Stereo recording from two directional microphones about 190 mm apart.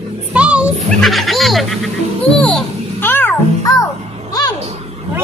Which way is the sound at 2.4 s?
10° left (ahead or behind).